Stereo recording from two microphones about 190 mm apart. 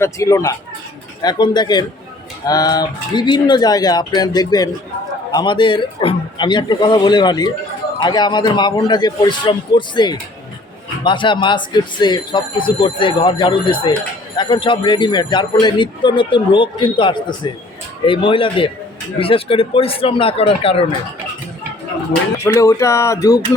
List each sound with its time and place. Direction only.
0.0 s a man's voice: 15° left (ahead or behind)
22.4 s speech: 15° left (ahead or behind)